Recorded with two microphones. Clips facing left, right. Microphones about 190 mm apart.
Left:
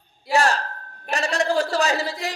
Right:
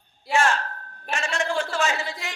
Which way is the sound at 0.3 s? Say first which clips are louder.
Left 2 dB; 35° left (ahead or behind).